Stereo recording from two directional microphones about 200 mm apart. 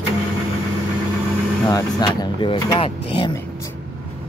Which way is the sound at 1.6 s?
20° left (ahead or behind).